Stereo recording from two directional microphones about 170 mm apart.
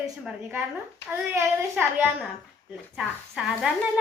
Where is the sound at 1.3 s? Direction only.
10° right (ahead or behind).